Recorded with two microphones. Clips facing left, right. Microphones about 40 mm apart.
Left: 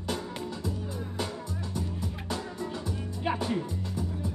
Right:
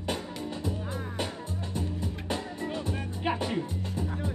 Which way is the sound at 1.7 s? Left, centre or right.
Right.